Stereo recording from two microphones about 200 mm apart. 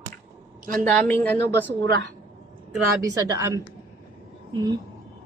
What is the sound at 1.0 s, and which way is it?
Speech, 10° left (ahead or behind).